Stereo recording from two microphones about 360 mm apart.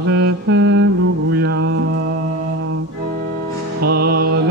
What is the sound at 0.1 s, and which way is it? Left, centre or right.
Mantra, right.